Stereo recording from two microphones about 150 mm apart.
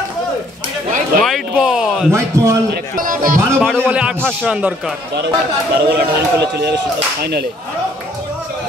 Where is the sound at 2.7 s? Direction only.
65° right (ahead or behind).